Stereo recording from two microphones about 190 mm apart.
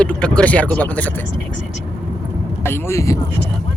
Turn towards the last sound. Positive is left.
turn(degrees=15)  # may be behind; listen again after turning